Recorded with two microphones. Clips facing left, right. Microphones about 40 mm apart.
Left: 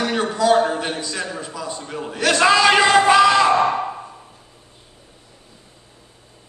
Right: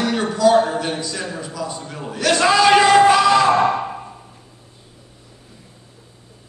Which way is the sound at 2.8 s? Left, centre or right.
Left.